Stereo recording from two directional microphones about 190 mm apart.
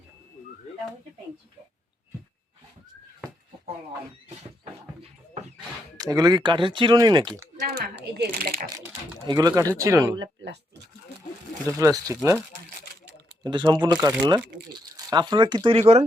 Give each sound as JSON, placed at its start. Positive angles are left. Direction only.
{"t": 6.0, "sound": "speech", "side_deg": -20}
{"t": 7.8, "sound": "speech", "side_deg": -55}
{"t": 9.2, "sound": "speech", "side_deg": -20}
{"t": 10.2, "sound": "speech", "side_deg": -65}
{"t": 11.6, "sound": "speech", "side_deg": -15}
{"t": 13.4, "sound": "speech", "side_deg": -20}